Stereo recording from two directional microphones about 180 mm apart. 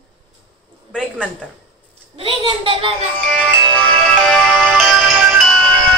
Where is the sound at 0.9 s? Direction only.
Centre (ahead or behind).